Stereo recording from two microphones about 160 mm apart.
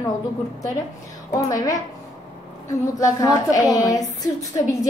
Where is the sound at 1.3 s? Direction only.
20° left (ahead or behind).